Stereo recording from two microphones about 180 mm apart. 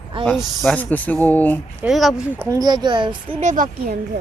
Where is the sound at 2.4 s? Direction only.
20° right (ahead or behind).